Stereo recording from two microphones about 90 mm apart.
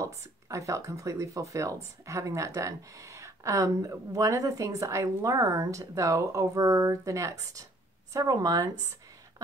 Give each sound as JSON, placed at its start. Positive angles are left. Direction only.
{"t": 0.0, "sound": "speech", "side_deg": -35}